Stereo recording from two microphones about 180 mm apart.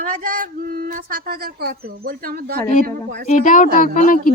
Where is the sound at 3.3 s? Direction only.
45° left (ahead or behind).